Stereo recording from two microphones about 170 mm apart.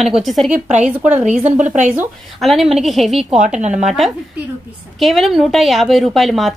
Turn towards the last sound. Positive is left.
turn(degrees=0)  # may be behind; listen again after turning